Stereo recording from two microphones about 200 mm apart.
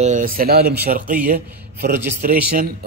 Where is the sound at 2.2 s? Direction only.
45° right (ahead or behind).